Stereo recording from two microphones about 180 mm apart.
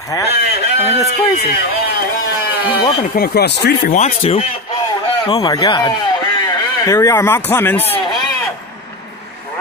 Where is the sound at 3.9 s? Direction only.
40° left (ahead or behind); by 7.8 s 10° left (ahead or behind).